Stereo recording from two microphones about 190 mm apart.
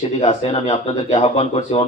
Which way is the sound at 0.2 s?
30° left (ahead or behind).